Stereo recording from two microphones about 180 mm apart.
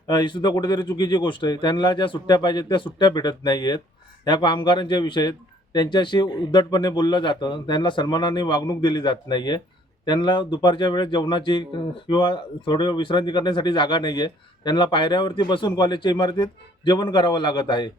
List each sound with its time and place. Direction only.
0.1 s speech: 25° left (ahead or behind)